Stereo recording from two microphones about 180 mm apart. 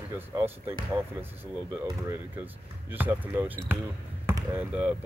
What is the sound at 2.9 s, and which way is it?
Speech, 10° right (ahead or behind).